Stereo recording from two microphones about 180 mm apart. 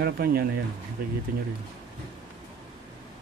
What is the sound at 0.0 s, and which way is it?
Speech, 55° right (ahead or behind).